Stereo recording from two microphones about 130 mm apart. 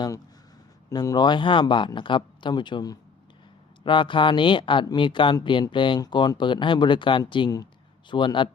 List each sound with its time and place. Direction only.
0.9 s speech: 30° left (ahead or behind)